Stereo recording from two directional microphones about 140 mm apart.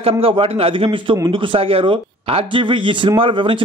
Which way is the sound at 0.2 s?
40° right (ahead or behind).